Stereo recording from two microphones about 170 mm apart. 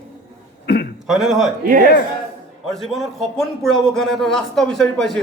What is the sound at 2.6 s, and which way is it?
A man's voice, centre (ahead or behind).